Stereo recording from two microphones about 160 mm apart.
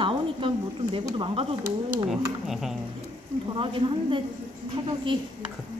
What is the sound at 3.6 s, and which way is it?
Speech, 30° right (ahead or behind).